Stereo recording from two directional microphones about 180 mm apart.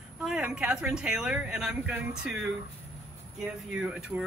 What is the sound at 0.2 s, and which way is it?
Speech, 5° right (ahead or behind).